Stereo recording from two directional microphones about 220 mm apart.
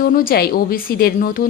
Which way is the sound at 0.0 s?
40° left (ahead or behind).